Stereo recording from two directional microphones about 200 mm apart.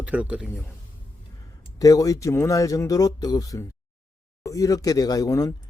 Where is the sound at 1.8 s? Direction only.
15° left (ahead or behind).